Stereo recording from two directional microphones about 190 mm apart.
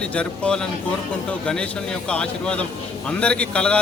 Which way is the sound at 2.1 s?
5° left (ahead or behind).